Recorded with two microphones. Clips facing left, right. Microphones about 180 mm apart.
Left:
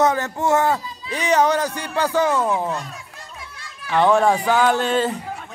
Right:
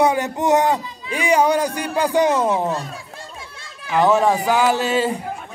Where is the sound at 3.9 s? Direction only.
5° right (ahead or behind).